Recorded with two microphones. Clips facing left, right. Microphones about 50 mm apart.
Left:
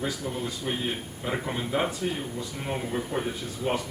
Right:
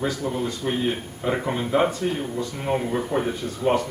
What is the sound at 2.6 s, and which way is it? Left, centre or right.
Speech, centre.